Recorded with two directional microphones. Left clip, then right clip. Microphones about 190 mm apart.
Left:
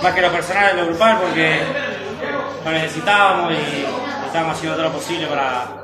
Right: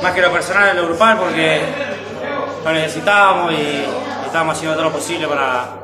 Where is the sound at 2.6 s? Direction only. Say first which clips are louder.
Right 3 dB; 25° right (ahead or behind).